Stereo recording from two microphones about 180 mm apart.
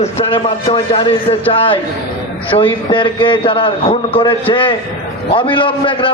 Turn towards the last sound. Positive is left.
turn(degrees=25)  # may be behind; listen again after turning